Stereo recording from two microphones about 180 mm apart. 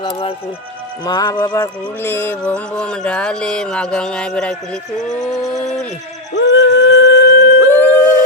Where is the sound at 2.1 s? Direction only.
10° left (ahead or behind).